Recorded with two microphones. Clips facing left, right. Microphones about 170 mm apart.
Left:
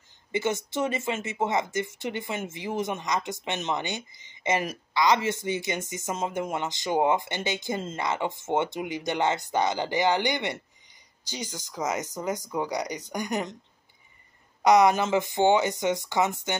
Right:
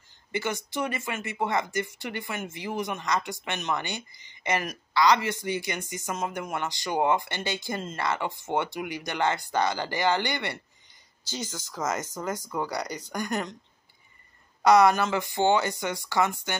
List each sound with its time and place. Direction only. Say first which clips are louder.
0.3 s speech: left 3 dB; 25° left (ahead or behind)
14.6 s speech: even; 20° left (ahead or behind)